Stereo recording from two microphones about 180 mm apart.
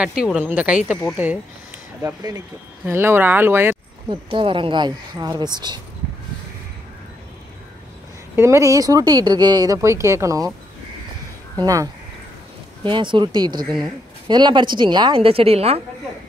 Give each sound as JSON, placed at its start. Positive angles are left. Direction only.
{"t": 0.0, "sound": "speech", "side_deg": -5}
{"t": 2.0, "sound": "speech", "side_deg": -20}
{"t": 4.1, "sound": "speech", "side_deg": -30}
{"t": 8.4, "sound": "speech", "side_deg": -15}
{"t": 11.6, "sound": "speech", "side_deg": -20}